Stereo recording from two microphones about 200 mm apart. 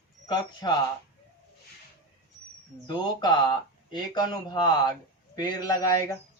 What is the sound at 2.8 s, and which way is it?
Speech, 20° left (ahead or behind).